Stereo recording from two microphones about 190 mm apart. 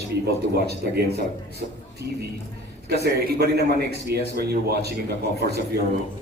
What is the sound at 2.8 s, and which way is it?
A man's voice, 60° right (ahead or behind).